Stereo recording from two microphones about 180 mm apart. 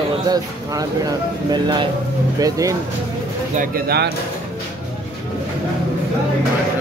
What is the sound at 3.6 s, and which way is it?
Speech, 60° right (ahead or behind).